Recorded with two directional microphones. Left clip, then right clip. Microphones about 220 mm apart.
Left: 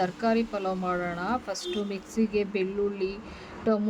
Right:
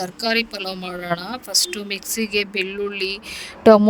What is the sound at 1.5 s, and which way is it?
A woman's voice, 50° right (ahead or behind).